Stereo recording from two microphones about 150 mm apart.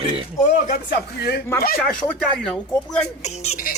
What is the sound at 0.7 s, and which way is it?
Speech, 90° left.